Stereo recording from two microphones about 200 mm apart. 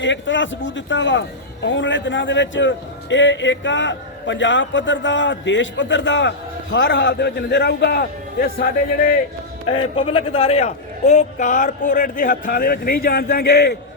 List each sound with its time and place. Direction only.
0.0 s a man's voice: 70° left (ahead or behind); by 9.1 s 45° left (ahead or behind)
9.6 s a man's voice: 25° left (ahead or behind); by 13.7 s 55° left (ahead or behind)